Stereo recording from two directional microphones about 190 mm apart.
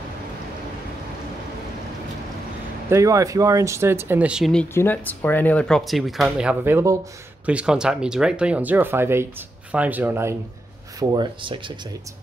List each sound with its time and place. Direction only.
2.9 s speech: 15° right (ahead or behind)
11.0 s speech: 20° right (ahead or behind)